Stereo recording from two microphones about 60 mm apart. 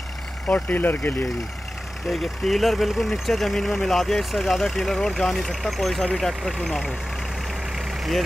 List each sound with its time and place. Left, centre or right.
0.5 s speech: left
2.0 s speech: centre
7.7 s vehicle: centre